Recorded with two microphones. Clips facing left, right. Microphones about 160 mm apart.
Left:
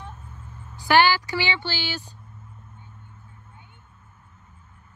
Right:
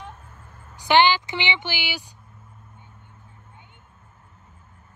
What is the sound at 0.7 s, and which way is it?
Speech, 20° right (ahead or behind).